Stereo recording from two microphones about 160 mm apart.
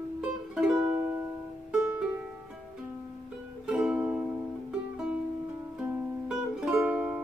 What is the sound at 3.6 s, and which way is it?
Music, 5° right (ahead or behind).